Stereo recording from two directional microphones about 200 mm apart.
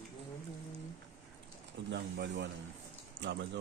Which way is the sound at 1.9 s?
60° right (ahead or behind).